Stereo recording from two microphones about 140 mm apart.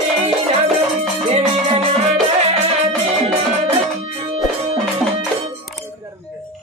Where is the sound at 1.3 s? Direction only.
45° right (ahead or behind).